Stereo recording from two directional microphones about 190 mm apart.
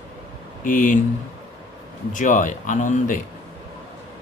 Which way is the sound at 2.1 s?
45° left (ahead or behind).